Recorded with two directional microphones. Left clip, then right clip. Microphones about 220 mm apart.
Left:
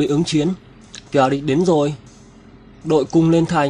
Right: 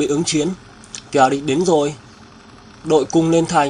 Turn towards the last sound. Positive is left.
turn(degrees=25)  # may be behind; listen again after turning